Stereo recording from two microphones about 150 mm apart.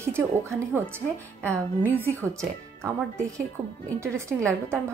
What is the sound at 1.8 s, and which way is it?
Speech, 15° right (ahead or behind).